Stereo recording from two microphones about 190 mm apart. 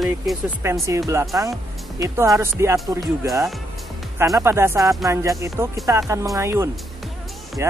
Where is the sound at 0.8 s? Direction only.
15° right (ahead or behind).